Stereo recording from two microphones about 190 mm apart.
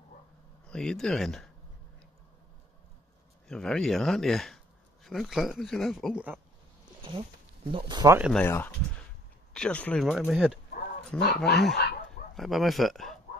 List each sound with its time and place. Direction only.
0.7 s speech: 5° left (ahead or behind)
3.4 s speech: 5° left (ahead or behind)
7.2 s speech: 30° right (ahead or behind)
8.2 s speech: 5° left (ahead or behind)
11.1 s speech: 60° left (ahead or behind)
12.4 s speech: centre (ahead or behind)